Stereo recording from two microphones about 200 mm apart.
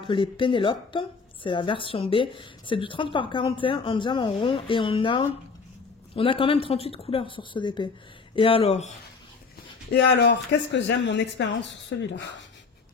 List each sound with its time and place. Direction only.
0.0 s a woman's voice: 25° left (ahead or behind)
9.9 s speech: 55° left (ahead or behind)